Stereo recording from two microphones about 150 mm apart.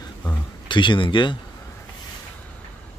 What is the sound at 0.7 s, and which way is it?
Speech, 35° left (ahead or behind).